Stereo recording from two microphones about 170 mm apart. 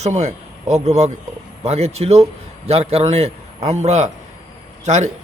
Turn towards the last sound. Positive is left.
turn(degrees=-40)  # may be behind; listen again after turning